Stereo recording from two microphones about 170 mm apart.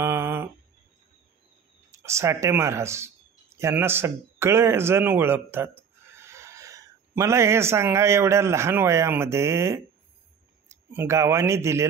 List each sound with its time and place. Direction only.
0.0 s a sound: 15° right (ahead or behind)
1.9 s speech: 15° right (ahead or behind)
10.9 s speech: 15° right (ahead or behind)